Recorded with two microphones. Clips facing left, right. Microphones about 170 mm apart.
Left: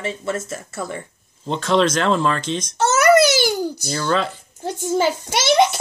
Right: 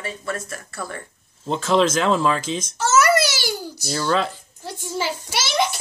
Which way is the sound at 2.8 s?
55° left (ahead or behind).